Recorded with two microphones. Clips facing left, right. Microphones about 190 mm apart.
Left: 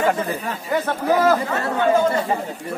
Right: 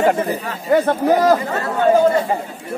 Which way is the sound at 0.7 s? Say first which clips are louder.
Right 6 dB; 45° right (ahead or behind).